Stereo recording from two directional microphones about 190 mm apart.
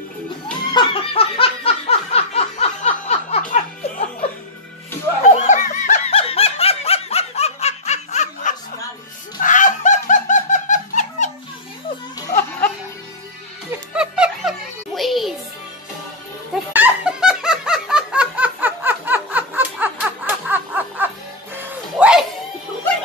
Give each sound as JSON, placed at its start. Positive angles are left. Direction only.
{"t": 0.7, "sound": "snicker", "side_deg": 30}
{"t": 5.2, "sound": "snicker", "side_deg": 40}
{"t": 9.4, "sound": "laughter", "side_deg": 40}
{"t": 12.2, "sound": "music", "side_deg": 15}
{"t": 13.7, "sound": "music", "side_deg": -5}
{"t": 16.7, "sound": "snicker", "side_deg": -5}
{"t": 21.5, "sound": "music", "side_deg": -5}